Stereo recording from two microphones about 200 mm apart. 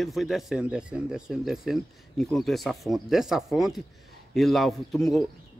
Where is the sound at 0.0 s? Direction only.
Centre (ahead or behind).